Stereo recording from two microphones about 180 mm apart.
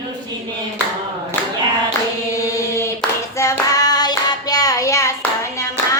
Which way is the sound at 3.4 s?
20° left (ahead or behind).